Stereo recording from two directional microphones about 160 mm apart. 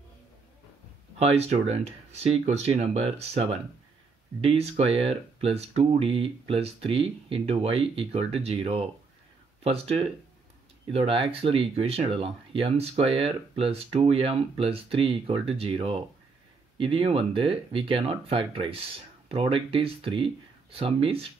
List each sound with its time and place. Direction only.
1.2 s speech: 40° right (ahead or behind)